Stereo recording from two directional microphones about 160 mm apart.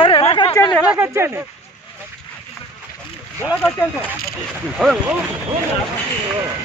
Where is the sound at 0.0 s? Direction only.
35° left (ahead or behind).